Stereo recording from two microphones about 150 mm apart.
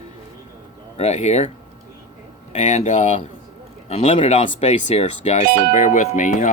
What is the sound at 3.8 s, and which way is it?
Speech, 40° left (ahead or behind).